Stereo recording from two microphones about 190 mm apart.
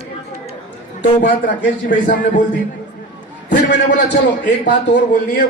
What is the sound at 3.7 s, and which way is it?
A man's voice, 65° left (ahead or behind).